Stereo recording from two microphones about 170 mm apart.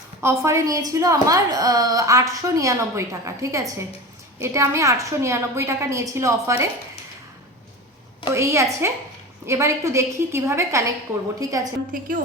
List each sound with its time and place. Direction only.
0.2 s a woman's voice: 15° right (ahead or behind)
8.3 s a woman's voice: 15° right (ahead or behind)
11.9 s a woman's voice: 50° right (ahead or behind)